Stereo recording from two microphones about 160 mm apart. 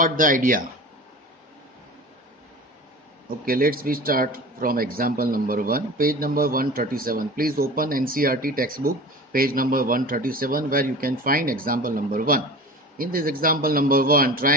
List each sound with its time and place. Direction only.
0.0 s speech: 60° right (ahead or behind)
3.4 s speech: 65° right (ahead or behind)